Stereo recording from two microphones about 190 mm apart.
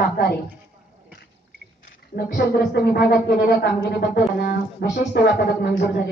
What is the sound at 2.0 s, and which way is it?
Speech, 55° left (ahead or behind).